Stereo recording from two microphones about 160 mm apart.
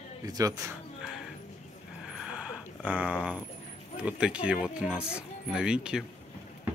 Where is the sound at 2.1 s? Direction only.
5° right (ahead or behind).